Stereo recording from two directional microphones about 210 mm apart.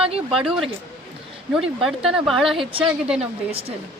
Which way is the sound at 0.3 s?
Centre (ahead or behind).